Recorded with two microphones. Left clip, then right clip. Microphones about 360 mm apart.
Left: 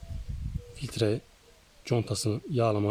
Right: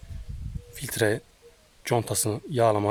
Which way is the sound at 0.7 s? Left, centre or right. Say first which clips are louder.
Right 4 dB; centre.